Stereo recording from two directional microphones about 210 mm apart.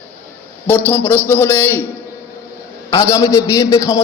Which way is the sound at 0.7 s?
10° left (ahead or behind).